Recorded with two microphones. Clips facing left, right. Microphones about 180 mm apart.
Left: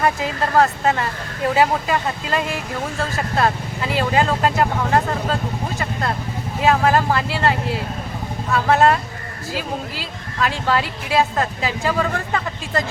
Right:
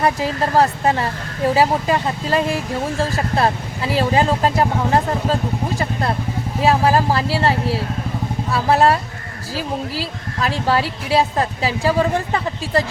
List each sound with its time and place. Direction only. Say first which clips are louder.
0.0 s speech: right 2 dB; 35° right (ahead or behind)
6.6 s speech: right 1 dB; 35° right (ahead or behind)